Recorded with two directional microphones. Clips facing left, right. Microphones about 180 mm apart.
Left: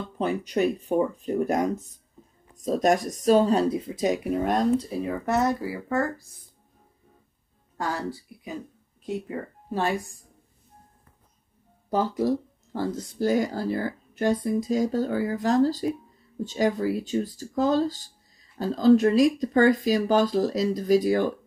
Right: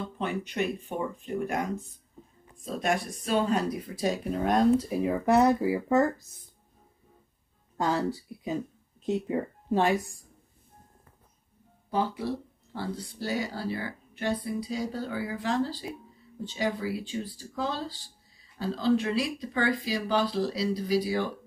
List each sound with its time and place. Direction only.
0.2 s speech: 35° left (ahead or behind); by 4.3 s 20° left (ahead or behind)
4.3 s speech: centre (ahead or behind)
4.8 s speech: 15° right (ahead or behind)
7.7 s speech: 20° right (ahead or behind)
11.9 s speech: 40° left (ahead or behind)